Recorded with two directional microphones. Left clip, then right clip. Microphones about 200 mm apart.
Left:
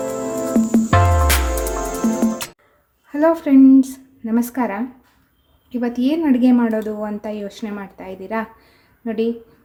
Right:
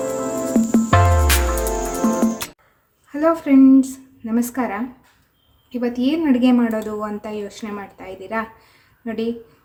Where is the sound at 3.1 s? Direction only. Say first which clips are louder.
Left 1 dB; 25° left (ahead or behind).